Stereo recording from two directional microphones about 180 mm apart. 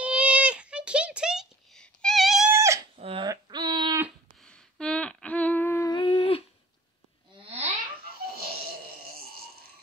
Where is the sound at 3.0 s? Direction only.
35° right (ahead or behind).